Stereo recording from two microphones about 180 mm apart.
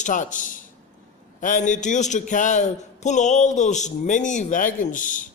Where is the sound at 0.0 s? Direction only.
45° left (ahead or behind).